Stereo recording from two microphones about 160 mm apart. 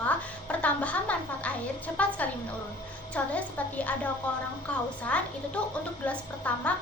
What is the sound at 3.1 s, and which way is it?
Speech, 10° left (ahead or behind).